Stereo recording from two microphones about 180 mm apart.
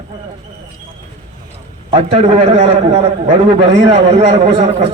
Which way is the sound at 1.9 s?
35° right (ahead or behind).